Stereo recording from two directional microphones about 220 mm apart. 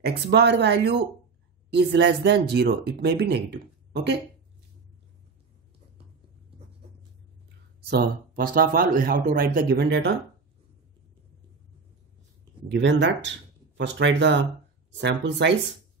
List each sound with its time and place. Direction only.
0.0 s speech: 50° right (ahead or behind)
7.8 s a man's voice: 45° right (ahead or behind)
12.6 s speech: 50° right (ahead or behind)